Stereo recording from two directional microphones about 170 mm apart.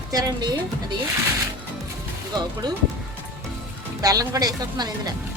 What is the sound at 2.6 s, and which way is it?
Speech, 25° right (ahead or behind).